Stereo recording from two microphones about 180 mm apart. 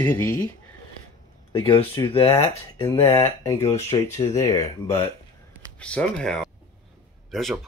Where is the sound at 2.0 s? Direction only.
20° left (ahead or behind).